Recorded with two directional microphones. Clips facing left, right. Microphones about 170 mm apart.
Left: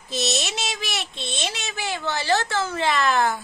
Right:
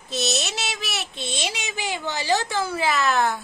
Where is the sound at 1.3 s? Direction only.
10° right (ahead or behind).